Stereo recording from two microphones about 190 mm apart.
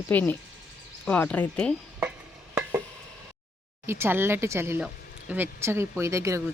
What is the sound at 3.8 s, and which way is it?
Speech, 15° right (ahead or behind).